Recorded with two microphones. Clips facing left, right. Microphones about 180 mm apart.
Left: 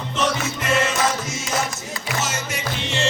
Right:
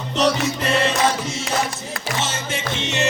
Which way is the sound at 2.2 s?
30° right (ahead or behind).